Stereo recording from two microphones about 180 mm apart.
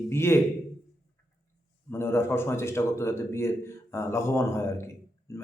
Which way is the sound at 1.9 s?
15° left (ahead or behind).